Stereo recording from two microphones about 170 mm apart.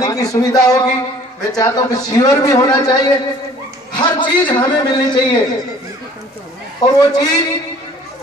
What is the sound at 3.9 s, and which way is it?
Speech, 25° left (ahead or behind).